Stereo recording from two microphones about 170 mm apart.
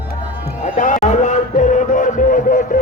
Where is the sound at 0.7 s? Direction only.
45° left (ahead or behind).